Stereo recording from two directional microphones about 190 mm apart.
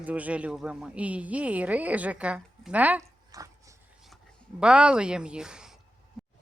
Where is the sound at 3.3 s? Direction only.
20° right (ahead or behind).